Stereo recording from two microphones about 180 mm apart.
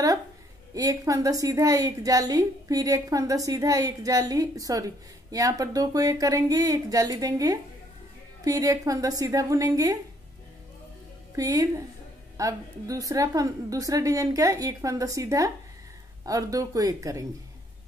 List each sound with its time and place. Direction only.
0.7 s a woman's voice: 20° right (ahead or behind)
11.3 s a woman's voice: 20° right (ahead or behind)